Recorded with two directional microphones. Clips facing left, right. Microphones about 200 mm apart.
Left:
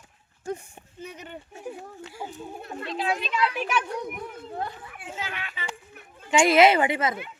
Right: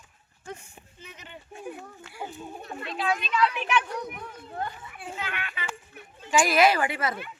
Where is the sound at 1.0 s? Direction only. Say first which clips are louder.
Left 9 dB; 45° left (ahead or behind).